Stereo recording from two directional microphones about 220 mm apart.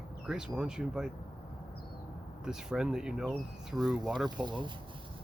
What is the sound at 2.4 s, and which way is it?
Speech, 5° right (ahead or behind).